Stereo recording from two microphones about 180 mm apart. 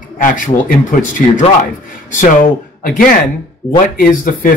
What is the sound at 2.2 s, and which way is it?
Speech, 50° left (ahead or behind).